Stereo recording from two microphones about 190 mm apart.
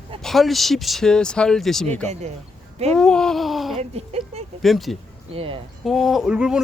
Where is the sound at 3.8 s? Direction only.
35° right (ahead or behind).